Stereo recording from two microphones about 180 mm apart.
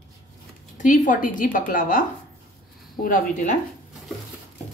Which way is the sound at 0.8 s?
45° left (ahead or behind).